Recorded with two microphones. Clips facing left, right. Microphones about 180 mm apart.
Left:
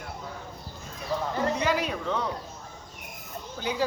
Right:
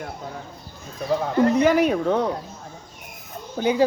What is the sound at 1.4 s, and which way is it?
Speech, 50° right (ahead or behind).